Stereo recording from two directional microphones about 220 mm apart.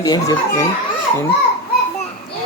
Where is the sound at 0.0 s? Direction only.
15° left (ahead or behind).